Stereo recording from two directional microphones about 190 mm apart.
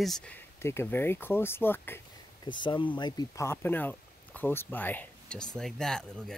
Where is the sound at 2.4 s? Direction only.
25° left (ahead or behind).